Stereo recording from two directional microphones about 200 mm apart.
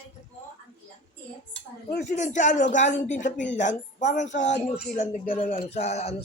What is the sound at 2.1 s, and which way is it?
Speech, 35° left (ahead or behind).